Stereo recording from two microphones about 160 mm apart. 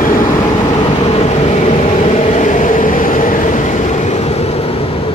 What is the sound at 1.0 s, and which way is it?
Vehicle, 40° left (ahead or behind).